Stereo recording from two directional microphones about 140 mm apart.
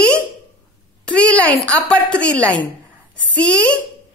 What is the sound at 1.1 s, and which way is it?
A child's voice, 10° left (ahead or behind).